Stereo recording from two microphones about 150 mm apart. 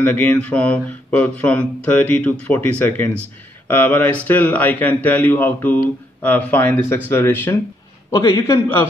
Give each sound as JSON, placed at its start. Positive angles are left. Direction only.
{"t": 0.0, "sound": "a man's voice", "side_deg": 10}